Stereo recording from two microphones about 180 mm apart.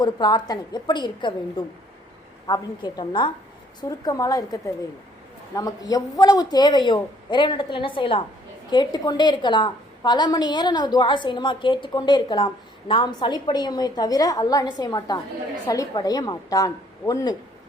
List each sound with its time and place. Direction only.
0.0 s a woman's voice: 25° left (ahead or behind)